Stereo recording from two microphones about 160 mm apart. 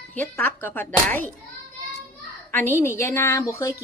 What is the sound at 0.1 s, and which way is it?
A woman's voice, 10° left (ahead or behind).